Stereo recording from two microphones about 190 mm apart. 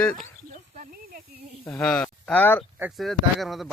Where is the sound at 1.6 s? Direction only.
5° left (ahead or behind).